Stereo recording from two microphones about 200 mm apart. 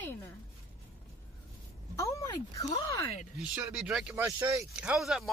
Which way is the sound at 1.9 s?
15° left (ahead or behind).